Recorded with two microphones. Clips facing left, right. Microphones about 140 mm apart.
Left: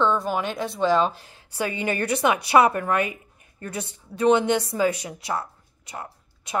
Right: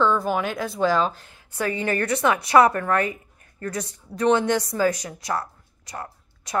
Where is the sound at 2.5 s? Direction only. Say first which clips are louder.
Right 2 dB; 10° left (ahead or behind).